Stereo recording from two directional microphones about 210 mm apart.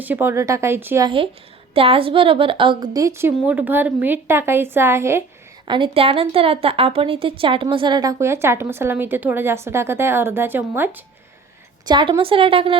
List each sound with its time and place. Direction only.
0.0 s a woman's voice: 10° right (ahead or behind)
1.7 s a woman's voice: 25° right (ahead or behind)
5.6 s a woman's voice: 20° right (ahead or behind)
11.9 s a woman's voice: 20° right (ahead or behind)